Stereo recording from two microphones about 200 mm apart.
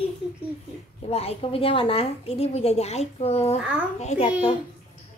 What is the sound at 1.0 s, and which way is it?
A woman's voice, 30° left (ahead or behind).